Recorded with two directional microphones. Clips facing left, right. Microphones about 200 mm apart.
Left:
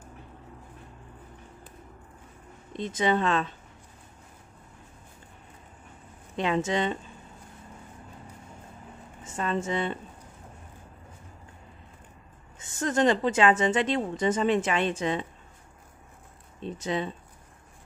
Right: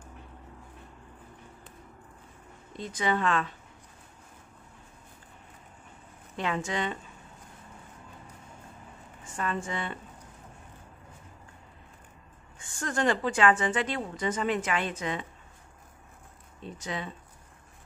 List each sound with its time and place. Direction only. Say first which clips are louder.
2.7 s a woman's voice: left 4 dB; 20° left (ahead or behind)
6.3 s a woman's voice: left 5 dB; 25° left (ahead or behind)
9.2 s a woman's voice: left 3 dB; 25° left (ahead or behind)
12.5 s a woman's voice: left 6 dB; 20° left (ahead or behind)
16.6 s a woman's voice: left 6 dB; 25° left (ahead or behind)